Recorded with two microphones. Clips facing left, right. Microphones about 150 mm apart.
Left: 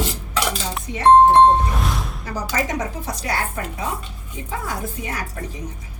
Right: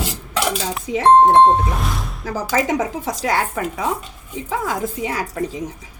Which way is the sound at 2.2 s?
90° right.